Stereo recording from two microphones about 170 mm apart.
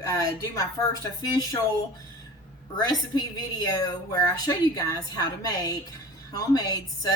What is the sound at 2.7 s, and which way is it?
A woman's voice, 25° left (ahead or behind).